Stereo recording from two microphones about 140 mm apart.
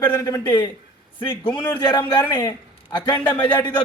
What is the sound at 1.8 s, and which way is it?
A man's voice, 35° left (ahead or behind).